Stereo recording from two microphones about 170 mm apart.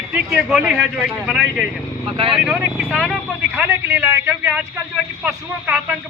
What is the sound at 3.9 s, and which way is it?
A man's voice, 15° right (ahead or behind).